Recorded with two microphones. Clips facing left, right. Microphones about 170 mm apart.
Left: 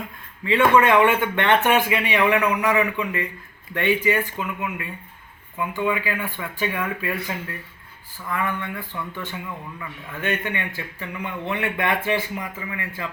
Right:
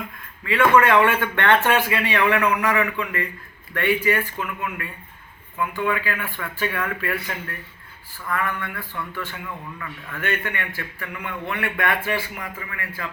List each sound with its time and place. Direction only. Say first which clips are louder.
0.4 s a man's voice: even; 20° left (ahead or behind)